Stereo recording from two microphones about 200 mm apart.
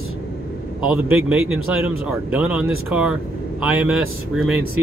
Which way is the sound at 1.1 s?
5° right (ahead or behind).